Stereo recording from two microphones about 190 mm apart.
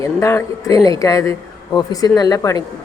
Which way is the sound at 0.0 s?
15° left (ahead or behind).